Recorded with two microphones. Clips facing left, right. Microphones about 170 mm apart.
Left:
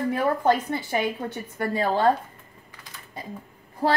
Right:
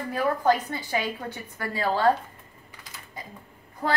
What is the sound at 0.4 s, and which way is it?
A woman's voice, 25° left (ahead or behind).